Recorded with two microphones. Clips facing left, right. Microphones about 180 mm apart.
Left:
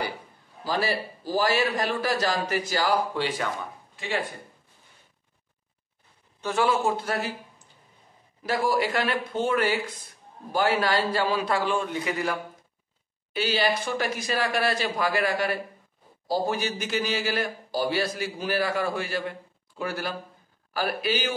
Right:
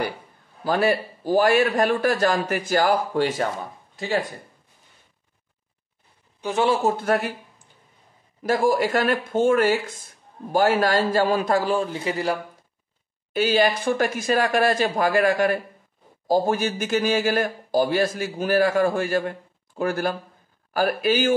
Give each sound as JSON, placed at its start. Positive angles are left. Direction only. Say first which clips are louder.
{"t": 0.7, "sound": "speech", "louder": "right 6 dB", "side_deg": -55}
{"t": 6.4, "sound": "a man's voice", "louder": "right 3 dB", "side_deg": -20}
{"t": 6.7, "sound": "a man's voice", "louder": "right 3 dB", "side_deg": -40}
{"t": 7.1, "sound": "speech", "louder": "right 7 dB", "side_deg": -60}
{"t": 8.4, "sound": "speech", "louder": "right 5 dB", "side_deg": -50}
{"t": 13.3, "sound": "speech", "louder": "right 5 dB", "side_deg": -50}